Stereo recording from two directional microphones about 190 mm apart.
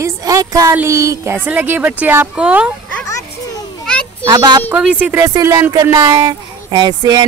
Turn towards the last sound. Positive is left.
turn(degrees=-20)  # may be behind; listen again after turning